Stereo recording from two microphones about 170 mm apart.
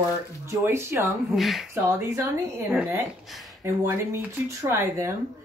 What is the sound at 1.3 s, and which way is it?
Speech, centre (ahead or behind).